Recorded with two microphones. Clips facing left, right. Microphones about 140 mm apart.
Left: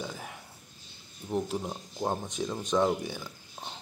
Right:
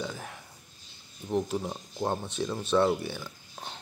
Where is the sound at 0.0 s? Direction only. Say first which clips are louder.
Right 2 dB; 10° left (ahead or behind).